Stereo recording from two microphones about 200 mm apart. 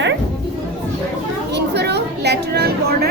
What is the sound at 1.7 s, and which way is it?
A woman's voice, 55° right (ahead or behind).